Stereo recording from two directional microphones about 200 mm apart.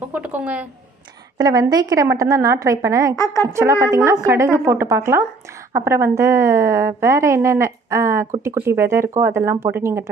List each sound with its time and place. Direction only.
0.1 s a woman's voice: 5° right (ahead or behind)
1.4 s a woman's voice: 20° right (ahead or behind)